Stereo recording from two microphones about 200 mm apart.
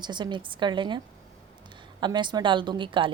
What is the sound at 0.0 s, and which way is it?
A woman's voice, 20° right (ahead or behind).